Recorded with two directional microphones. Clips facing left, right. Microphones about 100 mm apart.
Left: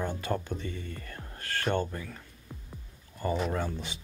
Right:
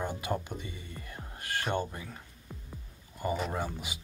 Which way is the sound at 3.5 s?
15° right (ahead or behind).